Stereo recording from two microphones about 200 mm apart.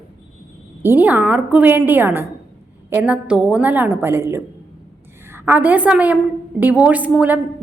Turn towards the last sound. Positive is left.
turn(degrees=-5)  # may be behind; listen again after turning